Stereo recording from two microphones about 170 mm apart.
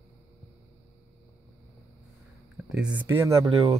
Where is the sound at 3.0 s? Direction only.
20° right (ahead or behind).